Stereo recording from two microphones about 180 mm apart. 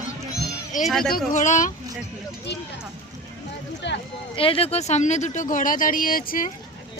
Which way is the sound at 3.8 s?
80° left.